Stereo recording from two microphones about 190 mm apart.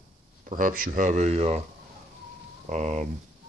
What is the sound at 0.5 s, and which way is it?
Speech, 45° right (ahead or behind).